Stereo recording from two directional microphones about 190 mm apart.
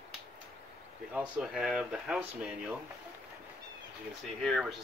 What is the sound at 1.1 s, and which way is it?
Speech, 5° right (ahead or behind).